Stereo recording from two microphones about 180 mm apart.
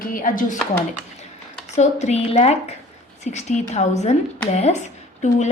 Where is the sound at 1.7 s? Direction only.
40° left (ahead or behind).